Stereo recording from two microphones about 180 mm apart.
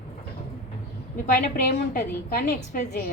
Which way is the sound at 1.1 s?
50° left (ahead or behind).